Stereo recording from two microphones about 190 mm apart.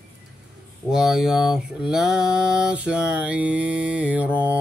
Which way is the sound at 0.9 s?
Centre (ahead or behind).